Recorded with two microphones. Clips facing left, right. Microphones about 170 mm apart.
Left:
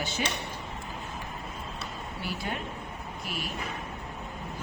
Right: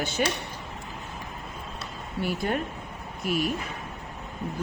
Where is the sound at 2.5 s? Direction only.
50° right (ahead or behind).